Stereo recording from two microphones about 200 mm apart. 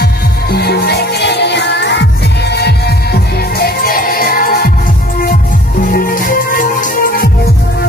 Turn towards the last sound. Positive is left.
turn(degrees=45)  # may be behind; listen again after turning